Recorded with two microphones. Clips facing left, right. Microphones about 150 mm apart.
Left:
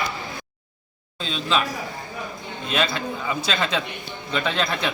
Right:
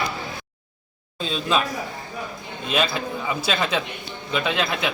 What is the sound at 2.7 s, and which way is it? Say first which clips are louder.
Speech: right 1 dB; 5° right (ahead or behind).